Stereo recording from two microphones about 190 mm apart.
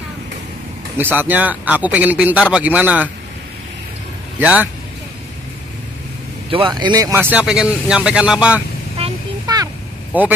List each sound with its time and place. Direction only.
0.9 s speech: 10° right (ahead or behind)
4.4 s speech: 10° right (ahead or behind)
6.5 s speech: 25° right (ahead or behind); by 8.6 s 5° right (ahead or behind)
8.9 s a sound: 30° right (ahead or behind)
10.1 s speech: 10° right (ahead or behind)